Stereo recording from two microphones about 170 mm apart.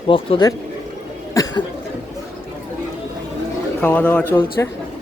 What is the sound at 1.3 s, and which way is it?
Cough, 20° left (ahead or behind).